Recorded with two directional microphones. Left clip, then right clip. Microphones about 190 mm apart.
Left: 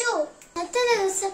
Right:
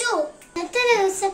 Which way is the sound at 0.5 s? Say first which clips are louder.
Right 3 dB; 15° left (ahead or behind).